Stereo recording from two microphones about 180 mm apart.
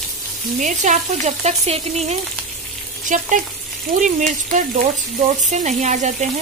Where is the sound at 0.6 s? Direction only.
45° right (ahead or behind).